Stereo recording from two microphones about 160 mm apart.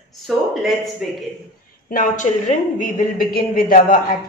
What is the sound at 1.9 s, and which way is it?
Speech, 55° left (ahead or behind).